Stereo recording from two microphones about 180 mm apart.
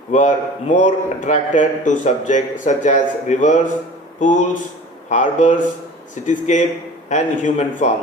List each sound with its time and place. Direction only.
0.1 s a man's voice: 45° left (ahead or behind)